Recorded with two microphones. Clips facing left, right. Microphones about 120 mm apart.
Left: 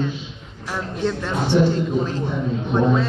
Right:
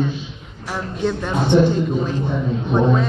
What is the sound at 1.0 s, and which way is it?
Speech, 15° right (ahead or behind).